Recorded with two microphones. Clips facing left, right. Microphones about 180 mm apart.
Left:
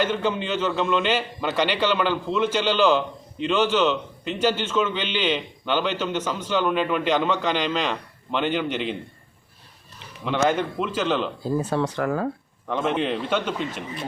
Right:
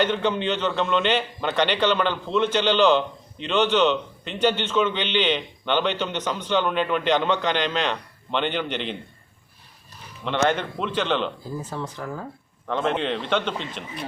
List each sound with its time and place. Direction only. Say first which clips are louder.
0.0 s a man's voice: right 1 dB; 5° left (ahead or behind)
10.2 s a man's voice: left 1 dB; 5° left (ahead or behind)
11.4 s speech: left 8 dB; 80° left
12.6 s a man's voice: even; 10° left (ahead or behind)